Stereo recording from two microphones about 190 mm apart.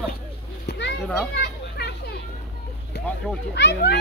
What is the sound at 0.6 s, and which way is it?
Children playing, 55° left (ahead or behind).